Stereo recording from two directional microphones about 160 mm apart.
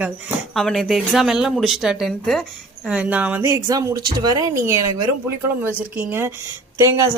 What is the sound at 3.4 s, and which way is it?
Speech, 20° right (ahead or behind).